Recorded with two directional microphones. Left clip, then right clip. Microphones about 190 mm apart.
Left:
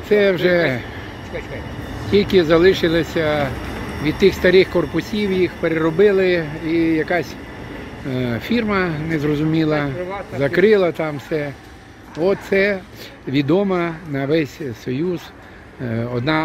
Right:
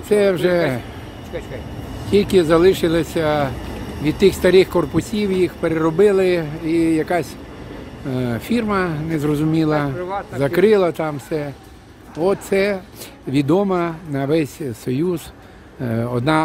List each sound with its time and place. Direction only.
0.1 s speech: 10° right (ahead or behind)
2.0 s speech: 15° right (ahead or behind)
14.9 s speech: 25° right (ahead or behind)